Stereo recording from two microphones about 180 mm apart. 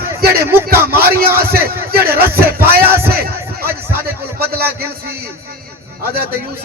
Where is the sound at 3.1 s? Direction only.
55° right (ahead or behind).